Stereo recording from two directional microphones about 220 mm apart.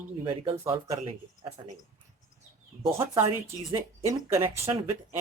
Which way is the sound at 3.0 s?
15° right (ahead or behind).